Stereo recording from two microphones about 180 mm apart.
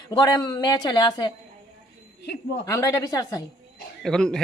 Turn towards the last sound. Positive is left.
turn(degrees=5)  # may be behind; listen again after turning